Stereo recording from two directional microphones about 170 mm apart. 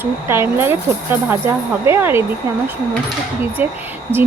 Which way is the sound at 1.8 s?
15° right (ahead or behind).